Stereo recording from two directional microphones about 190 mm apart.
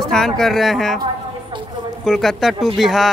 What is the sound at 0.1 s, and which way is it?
Speech, centre (ahead or behind).